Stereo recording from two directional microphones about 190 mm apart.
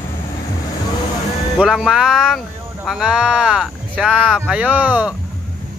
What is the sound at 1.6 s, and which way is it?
Speech, 5° right (ahead or behind).